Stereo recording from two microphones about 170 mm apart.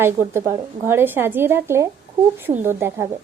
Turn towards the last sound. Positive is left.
turn(degrees=-15)  # may be behind; listen again after turning